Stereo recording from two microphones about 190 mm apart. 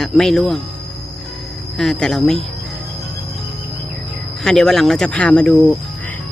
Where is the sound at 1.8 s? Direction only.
Centre (ahead or behind).